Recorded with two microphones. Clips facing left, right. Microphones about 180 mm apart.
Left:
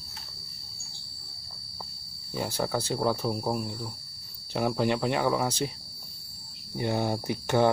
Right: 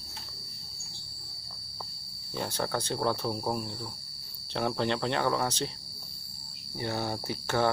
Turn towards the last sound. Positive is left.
turn(degrees=15)  # may be behind; listen again after turning